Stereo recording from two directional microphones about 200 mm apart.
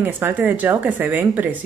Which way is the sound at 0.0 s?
10° right (ahead or behind).